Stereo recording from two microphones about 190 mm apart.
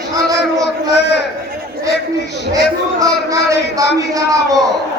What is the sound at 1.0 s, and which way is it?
Speech, 65° left (ahead or behind).